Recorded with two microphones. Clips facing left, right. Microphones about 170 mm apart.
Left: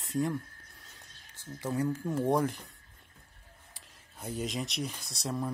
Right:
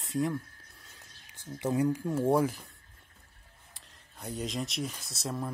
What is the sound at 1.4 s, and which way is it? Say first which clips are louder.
Speech: right 4 dB; 15° right (ahead or behind).